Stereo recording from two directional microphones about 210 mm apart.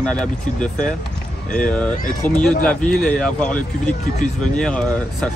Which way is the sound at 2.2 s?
5° left (ahead or behind).